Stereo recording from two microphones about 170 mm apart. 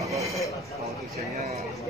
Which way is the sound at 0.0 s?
20° right (ahead or behind).